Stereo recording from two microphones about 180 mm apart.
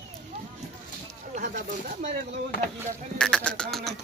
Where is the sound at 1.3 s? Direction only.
45° right (ahead or behind).